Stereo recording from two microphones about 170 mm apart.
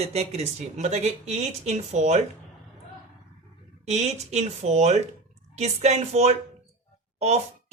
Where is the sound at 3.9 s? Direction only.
40° right (ahead or behind).